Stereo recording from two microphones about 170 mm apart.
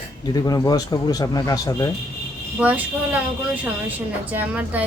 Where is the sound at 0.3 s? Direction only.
20° left (ahead or behind).